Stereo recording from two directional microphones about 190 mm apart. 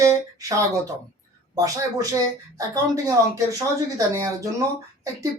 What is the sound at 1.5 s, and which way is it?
Speech, 20° right (ahead or behind).